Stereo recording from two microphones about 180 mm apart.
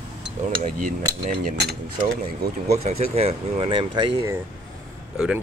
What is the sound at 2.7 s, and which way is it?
Speech, 35° right (ahead or behind).